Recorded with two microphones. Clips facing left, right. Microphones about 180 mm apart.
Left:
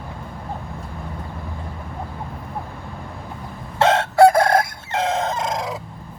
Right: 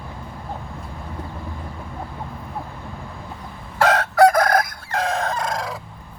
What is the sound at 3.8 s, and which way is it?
Crowing, 25° left (ahead or behind).